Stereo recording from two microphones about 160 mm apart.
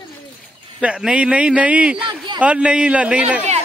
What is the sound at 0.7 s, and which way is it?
Speech, 5° right (ahead or behind).